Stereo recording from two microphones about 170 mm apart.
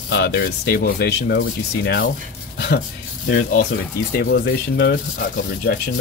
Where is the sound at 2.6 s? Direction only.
75° left (ahead or behind).